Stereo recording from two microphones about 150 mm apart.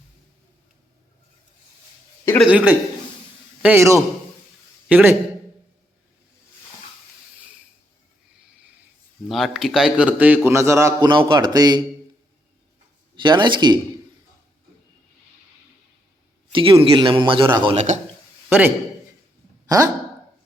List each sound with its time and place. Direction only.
2.4 s a man's voice: 10° right (ahead or behind)
9.3 s a man's voice: centre (ahead or behind); by 11.8 s 25° right (ahead or behind)
13.1 s a man's voice: 30° right (ahead or behind)
16.5 s a man's voice: 35° right (ahead or behind)
17.7 s a man's voice: 50° right (ahead or behind)
18.4 s a man's voice: 15° right (ahead or behind)
19.6 s speech: 25° right (ahead or behind)